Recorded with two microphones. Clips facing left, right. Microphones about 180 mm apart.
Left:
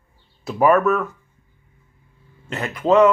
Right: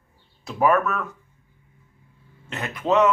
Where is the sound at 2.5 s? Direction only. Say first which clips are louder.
Left 5 dB; centre (ahead or behind).